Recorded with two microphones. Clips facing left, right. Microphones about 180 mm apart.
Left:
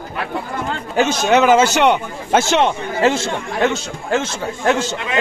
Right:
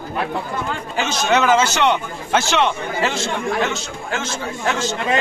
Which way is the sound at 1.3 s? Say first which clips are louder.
Left 4 dB; 10° left (ahead or behind).